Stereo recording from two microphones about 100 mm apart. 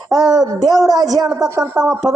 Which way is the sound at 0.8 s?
40° right (ahead or behind).